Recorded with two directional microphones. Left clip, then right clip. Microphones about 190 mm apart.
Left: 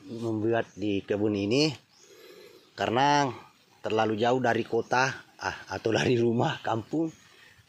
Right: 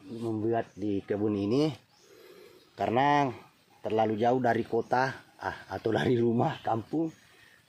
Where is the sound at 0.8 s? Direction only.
5° left (ahead or behind).